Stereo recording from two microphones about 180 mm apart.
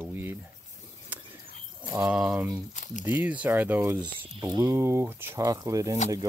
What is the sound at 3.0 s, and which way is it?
Speech, 10° right (ahead or behind).